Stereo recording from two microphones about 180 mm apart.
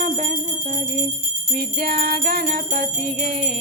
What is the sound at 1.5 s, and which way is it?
Music, 55° right (ahead or behind).